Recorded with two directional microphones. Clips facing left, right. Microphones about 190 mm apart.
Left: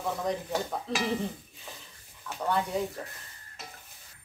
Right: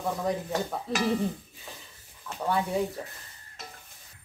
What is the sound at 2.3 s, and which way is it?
Speech, 5° right (ahead or behind).